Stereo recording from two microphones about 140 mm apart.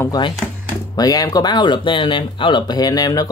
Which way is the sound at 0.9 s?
25° left (ahead or behind).